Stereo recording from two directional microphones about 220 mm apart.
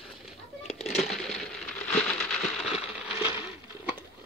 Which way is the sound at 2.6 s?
25° left (ahead or behind).